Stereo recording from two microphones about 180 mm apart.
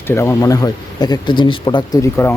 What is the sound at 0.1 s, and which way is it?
Speech, 15° left (ahead or behind).